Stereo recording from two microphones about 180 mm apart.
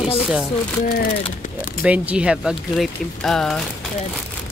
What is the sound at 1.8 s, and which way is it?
Speech, 5° right (ahead or behind).